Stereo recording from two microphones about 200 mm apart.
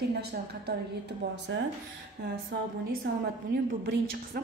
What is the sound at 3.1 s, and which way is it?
Speech, 60° right (ahead or behind).